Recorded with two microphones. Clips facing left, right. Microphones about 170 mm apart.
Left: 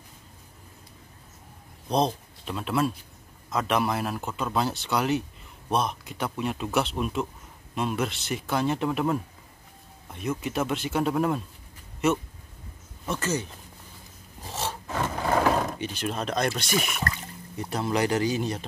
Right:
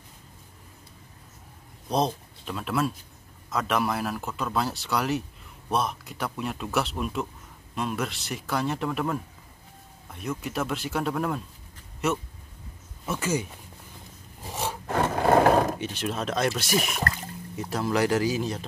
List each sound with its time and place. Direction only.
1.9 s speech: centre (ahead or behind)
10.4 s speech: centre (ahead or behind)
14.5 s filing: 10° right (ahead or behind)
14.9 s wood: 55° right (ahead or behind)
15.8 s speech: centre (ahead or behind)
16.9 s speech: 40° right (ahead or behind)
17.6 s speech: centre (ahead or behind)